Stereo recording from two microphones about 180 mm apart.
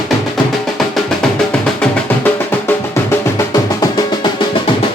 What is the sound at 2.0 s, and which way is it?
Music, 10° left (ahead or behind).